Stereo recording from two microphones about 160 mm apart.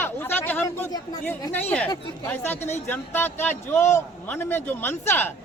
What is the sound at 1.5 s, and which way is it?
A man's voice, 10° left (ahead or behind).